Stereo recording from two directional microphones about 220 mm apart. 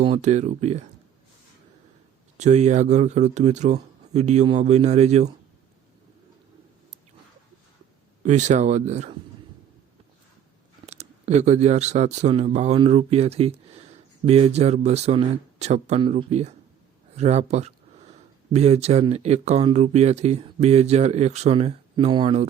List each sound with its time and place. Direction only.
0.0 s speech: 30° right (ahead or behind)
2.4 s speech: 30° right (ahead or behind)
8.2 s speech: 30° right (ahead or behind)
10.8 s speech: 30° right (ahead or behind)